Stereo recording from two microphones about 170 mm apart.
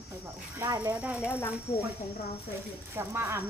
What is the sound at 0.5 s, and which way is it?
Speech, 25° right (ahead or behind).